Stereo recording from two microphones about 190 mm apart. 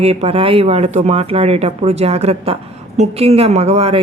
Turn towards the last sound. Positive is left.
turn(degrees=-35)  # may be behind; listen again after turning